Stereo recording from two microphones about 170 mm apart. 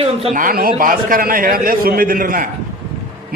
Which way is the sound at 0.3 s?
55° right (ahead or behind).